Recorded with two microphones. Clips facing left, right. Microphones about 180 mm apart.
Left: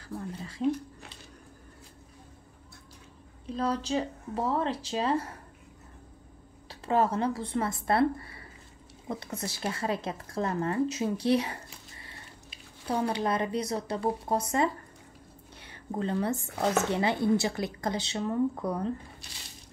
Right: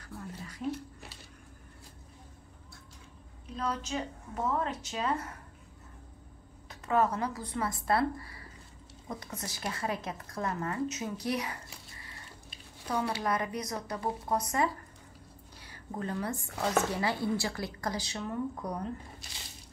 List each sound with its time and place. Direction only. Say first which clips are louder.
0.0 s a sound: left 5 dB; 30° left (ahead or behind)
3.5 s speech: left 5 dB; 30° left (ahead or behind)
6.7 s a woman's voice: left 2 dB; 30° left (ahead or behind)
13.1 s speech: left 4 dB; 25° left (ahead or behind)